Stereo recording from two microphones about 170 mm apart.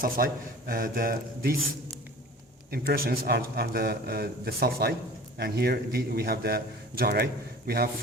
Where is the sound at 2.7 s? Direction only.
60° right (ahead or behind).